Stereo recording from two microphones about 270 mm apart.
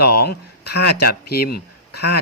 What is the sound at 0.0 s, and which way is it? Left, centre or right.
A man's voice, left.